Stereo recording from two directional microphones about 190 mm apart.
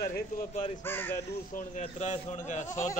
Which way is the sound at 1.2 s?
35° left (ahead or behind).